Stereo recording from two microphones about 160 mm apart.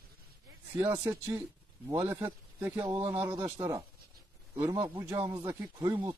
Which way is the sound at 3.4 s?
15° right (ahead or behind).